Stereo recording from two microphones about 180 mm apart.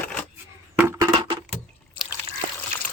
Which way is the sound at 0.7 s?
15° right (ahead or behind).